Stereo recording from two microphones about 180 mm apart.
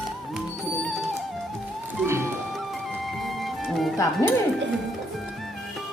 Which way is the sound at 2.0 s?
15° right (ahead or behind).